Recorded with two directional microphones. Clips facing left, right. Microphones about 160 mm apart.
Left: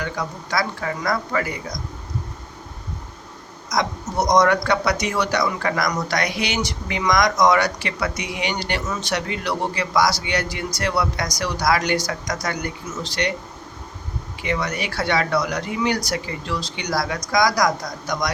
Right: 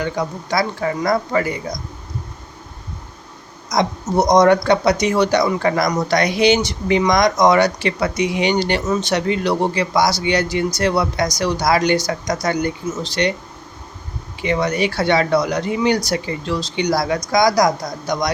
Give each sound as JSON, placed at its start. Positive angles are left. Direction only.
{"t": 0.0, "sound": "speech", "side_deg": -25}
{"t": 3.7, "sound": "speech", "side_deg": -25}
{"t": 14.4, "sound": "speech", "side_deg": -25}